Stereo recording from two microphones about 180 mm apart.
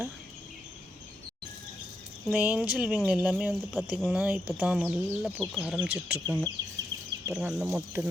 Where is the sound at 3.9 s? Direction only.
5° left (ahead or behind).